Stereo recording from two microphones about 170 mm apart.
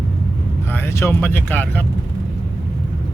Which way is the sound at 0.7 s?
15° left (ahead or behind).